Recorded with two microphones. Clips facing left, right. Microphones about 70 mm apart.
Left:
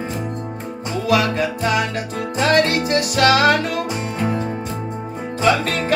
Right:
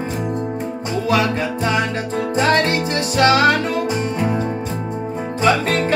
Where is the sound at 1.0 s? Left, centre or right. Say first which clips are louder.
Left 1 dB; right.